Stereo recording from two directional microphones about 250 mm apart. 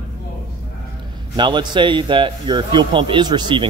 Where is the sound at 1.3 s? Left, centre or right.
Centre.